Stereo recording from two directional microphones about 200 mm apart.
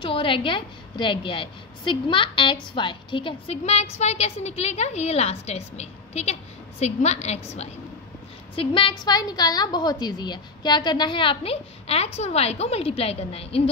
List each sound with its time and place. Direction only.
0.0 s a woman's voice: 25° left (ahead or behind)
8.5 s a woman's voice: 25° left (ahead or behind)